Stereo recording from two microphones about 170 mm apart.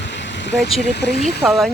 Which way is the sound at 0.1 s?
90° left.